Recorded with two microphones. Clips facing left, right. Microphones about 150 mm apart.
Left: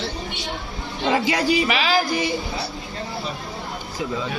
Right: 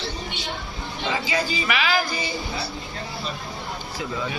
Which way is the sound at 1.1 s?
65° left (ahead or behind).